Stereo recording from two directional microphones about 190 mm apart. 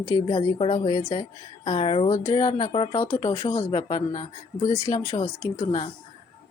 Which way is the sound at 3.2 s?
15° left (ahead or behind).